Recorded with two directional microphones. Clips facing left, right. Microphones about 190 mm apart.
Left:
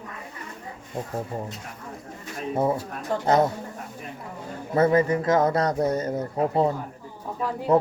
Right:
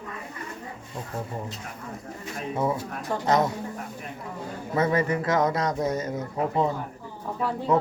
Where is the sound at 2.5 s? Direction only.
30° left (ahead or behind).